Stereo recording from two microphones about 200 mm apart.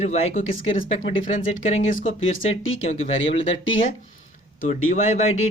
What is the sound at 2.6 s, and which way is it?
Speech, 90° left.